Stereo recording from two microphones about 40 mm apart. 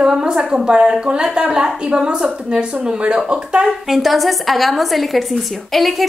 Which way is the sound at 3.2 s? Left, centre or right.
Right.